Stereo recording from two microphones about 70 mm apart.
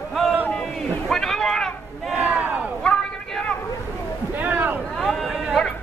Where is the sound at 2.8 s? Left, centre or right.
Centre.